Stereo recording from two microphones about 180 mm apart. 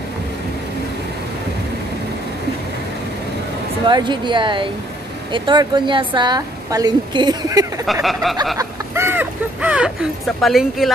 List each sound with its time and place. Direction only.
3.8 s a woman's voice: 25° right (ahead or behind)
7.8 s speech: centre (ahead or behind)
8.5 s a sound: 15° right (ahead or behind)